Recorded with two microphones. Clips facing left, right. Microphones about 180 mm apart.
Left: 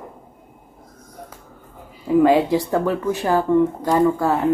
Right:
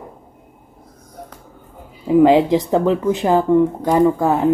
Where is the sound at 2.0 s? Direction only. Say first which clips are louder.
Right 3 dB; 20° right (ahead or behind).